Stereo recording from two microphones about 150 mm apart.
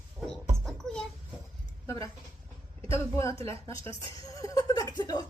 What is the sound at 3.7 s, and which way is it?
Speech, 35° right (ahead or behind).